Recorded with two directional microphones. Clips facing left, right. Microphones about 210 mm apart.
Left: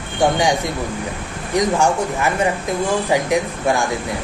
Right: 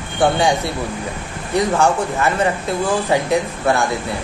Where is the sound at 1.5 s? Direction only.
15° left (ahead or behind).